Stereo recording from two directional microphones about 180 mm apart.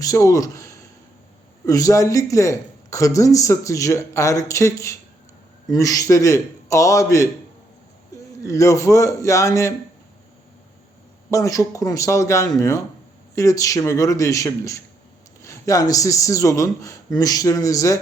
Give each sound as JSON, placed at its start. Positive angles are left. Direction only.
{"t": 0.0, "sound": "speech", "side_deg": 20}
{"t": 8.4, "sound": "speech", "side_deg": 15}
{"t": 11.3, "sound": "a man's voice", "side_deg": 20}